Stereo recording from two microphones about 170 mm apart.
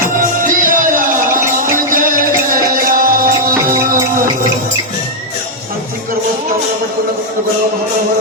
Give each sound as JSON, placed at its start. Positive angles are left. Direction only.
{"t": 0.2, "sound": "music", "side_deg": -55}